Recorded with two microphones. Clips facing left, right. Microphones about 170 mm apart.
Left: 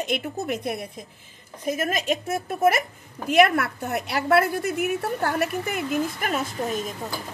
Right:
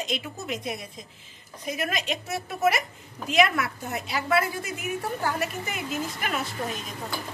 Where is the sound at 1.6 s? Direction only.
45° left (ahead or behind).